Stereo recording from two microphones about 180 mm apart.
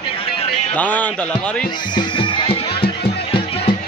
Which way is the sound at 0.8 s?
10° left (ahead or behind).